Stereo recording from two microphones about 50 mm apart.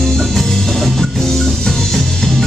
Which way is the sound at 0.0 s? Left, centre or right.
Centre.